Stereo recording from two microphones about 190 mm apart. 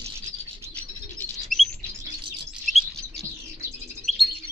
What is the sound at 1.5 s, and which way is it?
Chirp, centre (ahead or behind).